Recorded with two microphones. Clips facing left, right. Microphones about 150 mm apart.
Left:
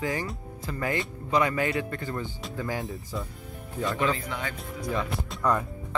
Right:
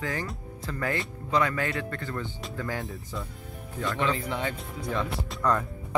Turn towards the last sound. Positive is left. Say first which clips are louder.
# even
turn(degrees=5)  # may be behind; listen again after turning